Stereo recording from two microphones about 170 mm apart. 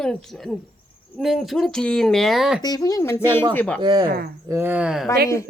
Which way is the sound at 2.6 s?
20° left (ahead or behind).